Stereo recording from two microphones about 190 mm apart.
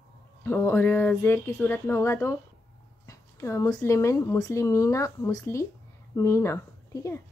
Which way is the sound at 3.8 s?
15° left (ahead or behind).